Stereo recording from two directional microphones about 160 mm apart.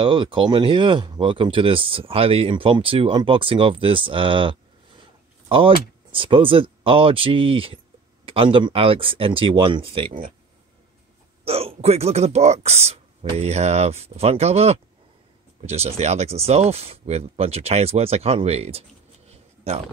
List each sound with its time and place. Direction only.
0.0 s speech: 30° right (ahead or behind)
11.4 s speech: 40° right (ahead or behind)